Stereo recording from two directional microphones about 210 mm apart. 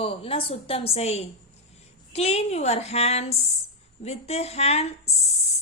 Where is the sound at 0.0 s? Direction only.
25° left (ahead or behind).